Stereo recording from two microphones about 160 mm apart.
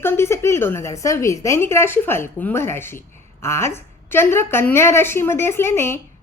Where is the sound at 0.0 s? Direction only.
15° left (ahead or behind).